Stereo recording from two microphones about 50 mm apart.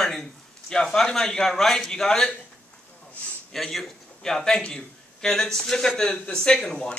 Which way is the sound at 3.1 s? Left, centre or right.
Left.